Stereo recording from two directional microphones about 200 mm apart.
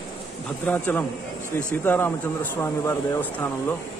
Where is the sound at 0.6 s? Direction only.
10° left (ahead or behind).